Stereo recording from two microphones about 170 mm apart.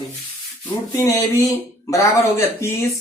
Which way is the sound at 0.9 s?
20° left (ahead or behind).